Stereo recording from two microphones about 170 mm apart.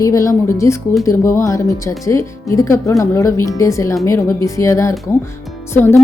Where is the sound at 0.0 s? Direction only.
20° left (ahead or behind).